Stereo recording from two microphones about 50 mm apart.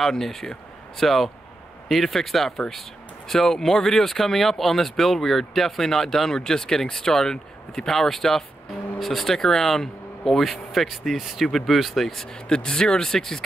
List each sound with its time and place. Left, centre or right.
0.0 s speech: centre
12.4 s speech: centre